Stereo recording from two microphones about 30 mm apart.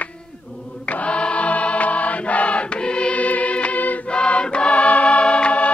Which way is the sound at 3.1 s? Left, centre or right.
Left.